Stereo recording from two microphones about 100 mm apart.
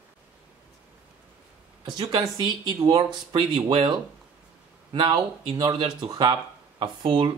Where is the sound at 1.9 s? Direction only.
40° right (ahead or behind).